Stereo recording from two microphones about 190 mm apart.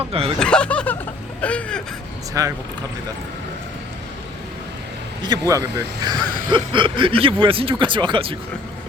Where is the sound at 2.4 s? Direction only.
15° right (ahead or behind).